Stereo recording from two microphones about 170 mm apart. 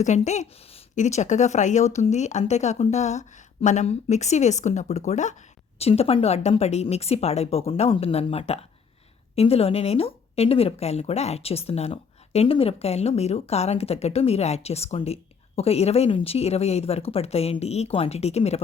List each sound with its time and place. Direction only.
0.0 s speech: 45° left (ahead or behind)